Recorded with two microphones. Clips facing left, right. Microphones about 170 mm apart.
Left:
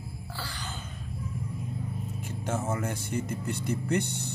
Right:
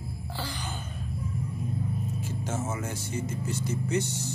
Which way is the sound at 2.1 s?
60° left (ahead or behind).